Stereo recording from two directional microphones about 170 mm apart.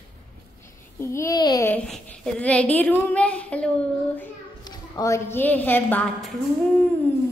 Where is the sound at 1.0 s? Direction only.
15° left (ahead or behind).